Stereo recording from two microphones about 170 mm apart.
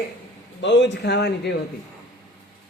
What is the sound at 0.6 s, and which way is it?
Speech, 90° left.